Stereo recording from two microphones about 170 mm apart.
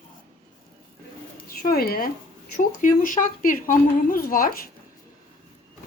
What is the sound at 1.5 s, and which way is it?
Speech, 60° left (ahead or behind).